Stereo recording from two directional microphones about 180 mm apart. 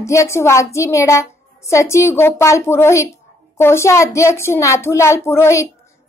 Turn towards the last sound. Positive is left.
turn(degrees=15)  # may be behind; listen again after turning